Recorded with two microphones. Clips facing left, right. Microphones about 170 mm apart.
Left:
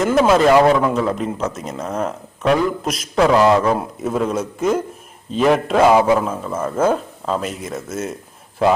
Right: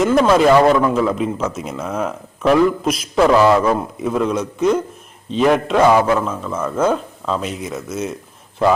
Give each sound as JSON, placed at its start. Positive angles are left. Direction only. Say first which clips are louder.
{"t": 0.0, "sound": "a man's voice", "louder": "right 1 dB", "side_deg": 5}
{"t": 5.9, "sound": "a man's voice", "louder": "left 1 dB", "side_deg": 20}
{"t": 6.1, "sound": "a man's voice", "louder": "even", "side_deg": 5}